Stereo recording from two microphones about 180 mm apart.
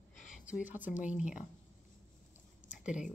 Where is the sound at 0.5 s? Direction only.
10° right (ahead or behind).